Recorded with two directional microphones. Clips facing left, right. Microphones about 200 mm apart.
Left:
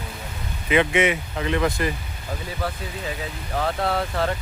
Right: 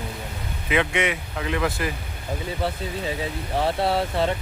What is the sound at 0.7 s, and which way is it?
Speech, centre (ahead or behind).